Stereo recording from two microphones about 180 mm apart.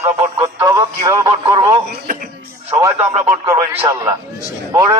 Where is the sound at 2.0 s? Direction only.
50° right (ahead or behind).